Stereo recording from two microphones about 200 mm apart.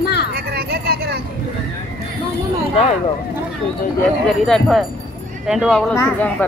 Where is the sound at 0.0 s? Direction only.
55° left (ahead or behind).